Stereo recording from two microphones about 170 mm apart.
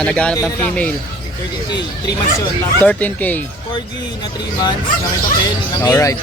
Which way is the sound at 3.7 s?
25° left (ahead or behind).